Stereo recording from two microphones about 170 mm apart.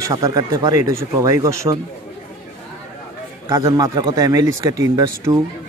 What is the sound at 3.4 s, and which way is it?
Speech, 25° right (ahead or behind).